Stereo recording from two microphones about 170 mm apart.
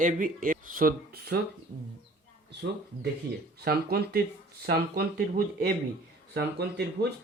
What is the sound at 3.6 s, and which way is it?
Speech, 70° right (ahead or behind).